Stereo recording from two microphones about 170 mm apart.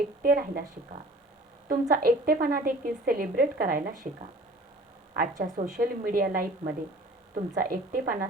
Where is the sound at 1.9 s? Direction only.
60° right (ahead or behind).